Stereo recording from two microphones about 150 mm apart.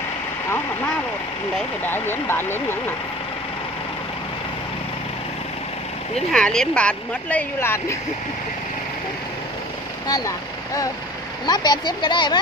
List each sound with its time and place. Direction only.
1.9 s speech: 15° left (ahead or behind)
6.1 s speech: 5° left (ahead or behind)
10.0 s speech: 25° left (ahead or behind)